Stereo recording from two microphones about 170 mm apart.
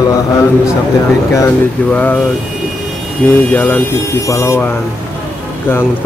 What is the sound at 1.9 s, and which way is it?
Speech, 10° left (ahead or behind).